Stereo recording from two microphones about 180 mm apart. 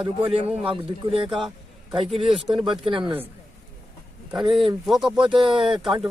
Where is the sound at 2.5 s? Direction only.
25° right (ahead or behind).